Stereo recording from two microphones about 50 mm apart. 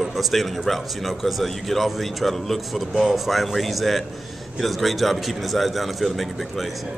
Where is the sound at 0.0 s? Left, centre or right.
Centre.